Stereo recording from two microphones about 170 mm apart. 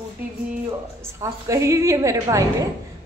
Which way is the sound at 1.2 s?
15° right (ahead or behind).